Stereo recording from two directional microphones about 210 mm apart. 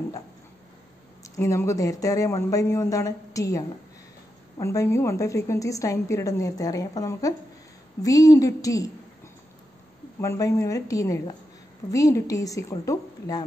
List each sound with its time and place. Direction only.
1.2 s a woman's voice: 15° left (ahead or behind)
10.2 s a woman's voice: 15° left (ahead or behind)